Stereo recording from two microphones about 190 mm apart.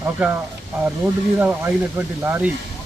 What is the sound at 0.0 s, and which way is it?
Speech, 10° right (ahead or behind).